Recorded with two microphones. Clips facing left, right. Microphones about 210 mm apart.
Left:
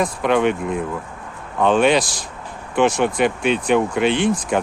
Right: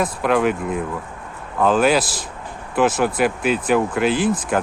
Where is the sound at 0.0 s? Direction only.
Centre (ahead or behind).